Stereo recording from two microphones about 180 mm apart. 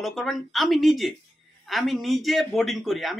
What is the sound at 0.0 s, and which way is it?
Speech, centre (ahead or behind).